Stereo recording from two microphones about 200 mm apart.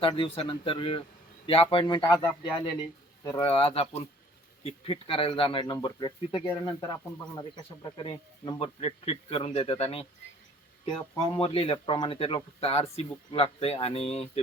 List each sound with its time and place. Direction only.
0.0 s speech: 25° left (ahead or behind)
11.2 s speech: 25° left (ahead or behind)